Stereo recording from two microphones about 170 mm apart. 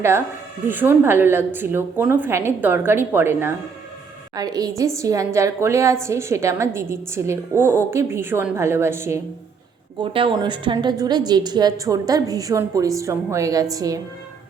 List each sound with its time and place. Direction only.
0.7 s a woman's voice: 10° right (ahead or behind)
10.0 s a woman's voice: 30° right (ahead or behind)